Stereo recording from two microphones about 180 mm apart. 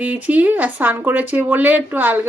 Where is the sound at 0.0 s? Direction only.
10° right (ahead or behind).